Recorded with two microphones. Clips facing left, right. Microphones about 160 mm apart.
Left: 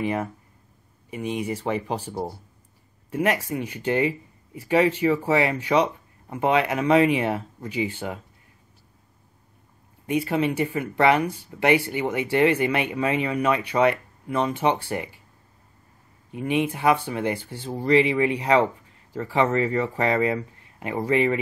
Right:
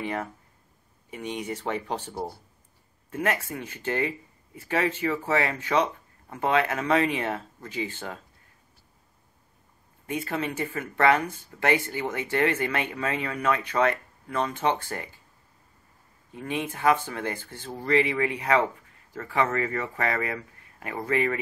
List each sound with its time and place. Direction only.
0.0 s speech: 5° left (ahead or behind)
3.1 s speech: 15° left (ahead or behind)
10.0 s speech: 15° left (ahead or behind)
16.3 s speech: 15° left (ahead or behind)